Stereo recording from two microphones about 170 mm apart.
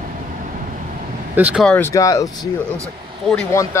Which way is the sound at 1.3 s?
5° right (ahead or behind).